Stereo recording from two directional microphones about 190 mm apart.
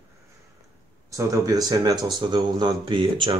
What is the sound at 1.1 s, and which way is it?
Speech, 15° right (ahead or behind).